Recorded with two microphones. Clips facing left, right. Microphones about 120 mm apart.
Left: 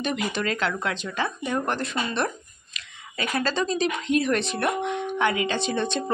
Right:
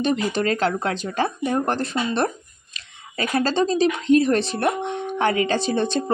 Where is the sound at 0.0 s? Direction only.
35° right (ahead or behind).